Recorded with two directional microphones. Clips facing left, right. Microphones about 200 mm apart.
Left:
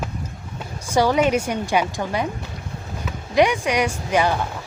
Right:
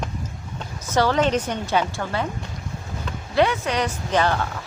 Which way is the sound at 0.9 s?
10° left (ahead or behind).